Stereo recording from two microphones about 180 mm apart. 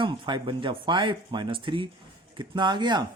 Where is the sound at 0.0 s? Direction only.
25° right (ahead or behind).